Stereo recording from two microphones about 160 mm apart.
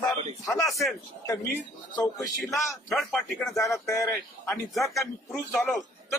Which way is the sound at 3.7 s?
20° left (ahead or behind).